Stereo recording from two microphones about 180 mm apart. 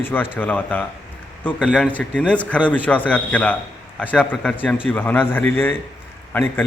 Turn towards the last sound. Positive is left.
turn(degrees=10)  # may be behind; listen again after turning